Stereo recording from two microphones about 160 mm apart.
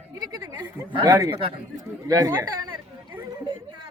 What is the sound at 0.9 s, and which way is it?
A man's voice, 25° right (ahead or behind).